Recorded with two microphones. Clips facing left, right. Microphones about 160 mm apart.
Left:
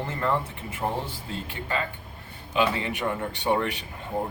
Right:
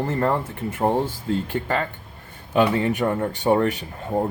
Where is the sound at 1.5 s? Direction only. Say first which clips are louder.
Right 6 dB; 50° right (ahead or behind).